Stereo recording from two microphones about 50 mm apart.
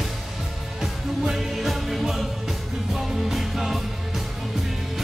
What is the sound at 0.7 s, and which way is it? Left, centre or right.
Music, centre.